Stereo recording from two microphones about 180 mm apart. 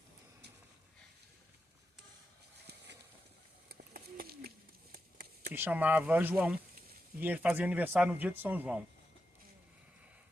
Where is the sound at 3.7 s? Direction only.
60° right (ahead or behind).